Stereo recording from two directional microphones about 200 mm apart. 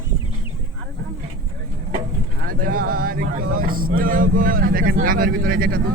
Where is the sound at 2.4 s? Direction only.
45° right (ahead or behind).